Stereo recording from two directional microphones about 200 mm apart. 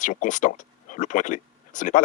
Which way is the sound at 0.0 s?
40° left (ahead or behind).